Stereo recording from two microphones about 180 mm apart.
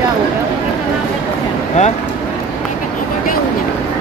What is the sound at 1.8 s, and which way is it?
Mantra, 40° left (ahead or behind).